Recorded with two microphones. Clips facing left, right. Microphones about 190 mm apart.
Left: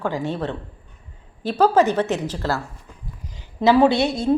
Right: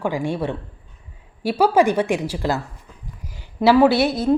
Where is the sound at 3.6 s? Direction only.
5° right (ahead or behind).